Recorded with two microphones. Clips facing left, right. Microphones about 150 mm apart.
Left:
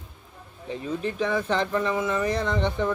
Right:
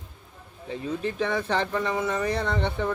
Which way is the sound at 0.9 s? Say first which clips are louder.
Left 1 dB; 35° left (ahead or behind).